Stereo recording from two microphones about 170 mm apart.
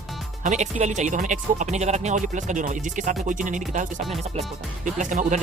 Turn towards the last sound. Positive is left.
turn(degrees=-45)  # may be behind; listen again after turning